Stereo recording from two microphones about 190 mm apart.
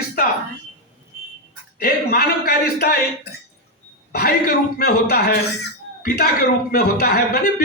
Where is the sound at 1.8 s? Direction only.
55° left (ahead or behind).